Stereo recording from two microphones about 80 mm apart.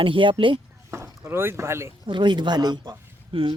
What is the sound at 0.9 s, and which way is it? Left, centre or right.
Speech, right.